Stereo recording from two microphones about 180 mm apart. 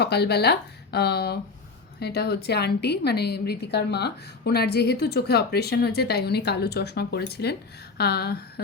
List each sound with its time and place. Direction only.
0.0 s a woman's voice: 65° left (ahead or behind)